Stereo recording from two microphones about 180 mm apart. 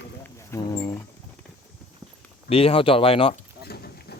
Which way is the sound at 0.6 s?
20° left (ahead or behind).